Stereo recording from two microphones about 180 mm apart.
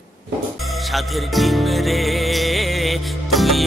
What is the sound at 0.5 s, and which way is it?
Music, centre (ahead or behind).